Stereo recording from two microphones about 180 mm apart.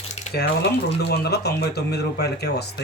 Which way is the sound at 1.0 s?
65° left (ahead or behind).